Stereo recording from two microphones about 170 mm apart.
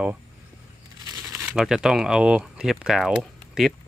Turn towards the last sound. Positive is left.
turn(degrees=0)  # may be behind; listen again after turning